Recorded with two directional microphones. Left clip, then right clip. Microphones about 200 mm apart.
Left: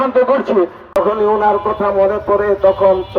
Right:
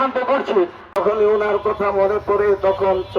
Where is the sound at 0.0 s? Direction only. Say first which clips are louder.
Left 5 dB; 45° left (ahead or behind).